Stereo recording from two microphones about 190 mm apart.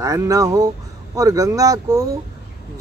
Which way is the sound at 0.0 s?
15° right (ahead or behind).